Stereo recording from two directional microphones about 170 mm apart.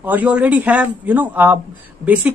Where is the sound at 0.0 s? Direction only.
10° right (ahead or behind).